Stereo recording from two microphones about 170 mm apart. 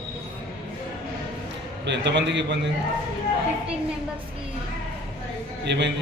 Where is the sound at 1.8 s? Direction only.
90° right.